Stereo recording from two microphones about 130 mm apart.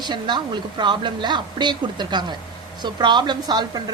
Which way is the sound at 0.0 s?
35° right (ahead or behind).